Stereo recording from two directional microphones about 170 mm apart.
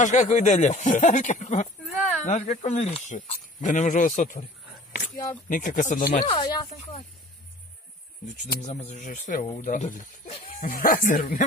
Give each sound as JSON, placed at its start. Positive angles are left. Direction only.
{"t": 0.0, "sound": "speech", "side_deg": 45}
{"t": 5.1, "sound": "speech", "side_deg": 20}
{"t": 5.5, "sound": "speech", "side_deg": 50}
{"t": 6.2, "sound": "speech", "side_deg": 30}
{"t": 8.6, "sound": "speech", "side_deg": 45}